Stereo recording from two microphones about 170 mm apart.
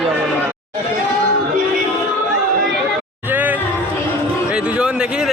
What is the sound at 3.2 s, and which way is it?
Music, 10° right (ahead or behind).